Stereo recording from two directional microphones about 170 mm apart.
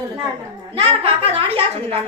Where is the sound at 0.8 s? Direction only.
35° right (ahead or behind).